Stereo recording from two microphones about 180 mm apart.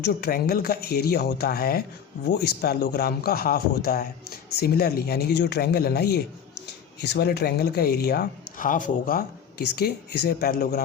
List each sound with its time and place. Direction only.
0.0 s a man's voice: 65° left (ahead or behind)